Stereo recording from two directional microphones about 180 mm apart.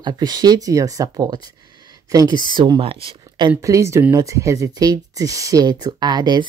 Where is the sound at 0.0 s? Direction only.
20° right (ahead or behind).